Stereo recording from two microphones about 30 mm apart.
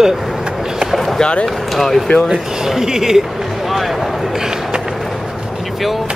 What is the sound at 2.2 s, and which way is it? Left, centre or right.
Speech, centre.